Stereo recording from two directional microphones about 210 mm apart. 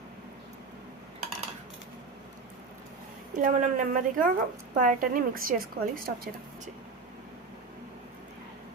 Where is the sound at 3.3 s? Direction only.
35° right (ahead or behind).